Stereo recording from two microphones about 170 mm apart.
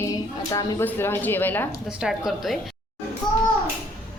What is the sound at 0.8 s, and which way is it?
Speech, 10° left (ahead or behind).